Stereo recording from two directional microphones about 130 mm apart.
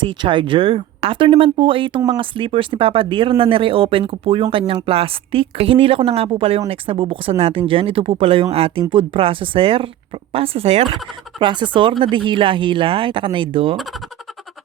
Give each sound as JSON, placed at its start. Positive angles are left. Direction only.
{"t": 0.0, "sound": "speech", "side_deg": -40}
{"t": 11.3, "sound": "speech", "side_deg": -40}